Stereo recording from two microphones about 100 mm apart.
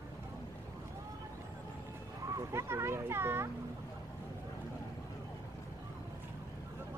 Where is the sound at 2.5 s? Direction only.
25° right (ahead or behind).